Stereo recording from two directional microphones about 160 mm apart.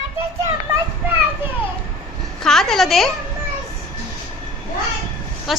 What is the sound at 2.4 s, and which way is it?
Speech, centre (ahead or behind).